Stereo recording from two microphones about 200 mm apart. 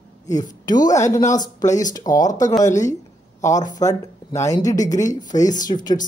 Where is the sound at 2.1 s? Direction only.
40° left (ahead or behind).